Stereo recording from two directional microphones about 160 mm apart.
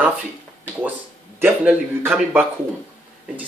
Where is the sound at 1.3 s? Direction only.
15° right (ahead or behind).